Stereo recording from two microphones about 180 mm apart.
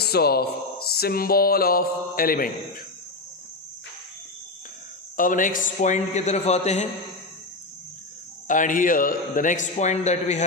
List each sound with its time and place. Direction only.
0.0 s speech: 60° left (ahead or behind)
5.1 s a man's voice: 50° left (ahead or behind)
8.4 s a man's voice: 45° left (ahead or behind)